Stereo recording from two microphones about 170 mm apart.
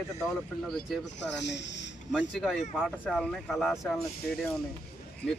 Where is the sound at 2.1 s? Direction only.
5° right (ahead or behind).